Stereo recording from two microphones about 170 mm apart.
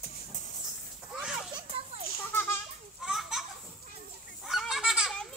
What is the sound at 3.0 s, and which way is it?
Children playing, centre (ahead or behind).